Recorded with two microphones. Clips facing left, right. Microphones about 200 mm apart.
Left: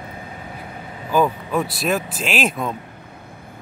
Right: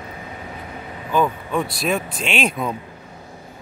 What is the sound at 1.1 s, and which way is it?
Speech, 5° left (ahead or behind).